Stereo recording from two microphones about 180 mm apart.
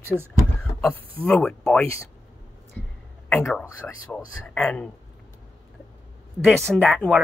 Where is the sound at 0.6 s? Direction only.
5° left (ahead or behind).